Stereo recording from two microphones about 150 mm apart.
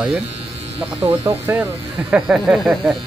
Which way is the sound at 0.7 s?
40° right (ahead or behind).